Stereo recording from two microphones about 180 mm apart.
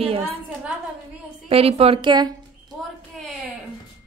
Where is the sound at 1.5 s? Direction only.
35° right (ahead or behind).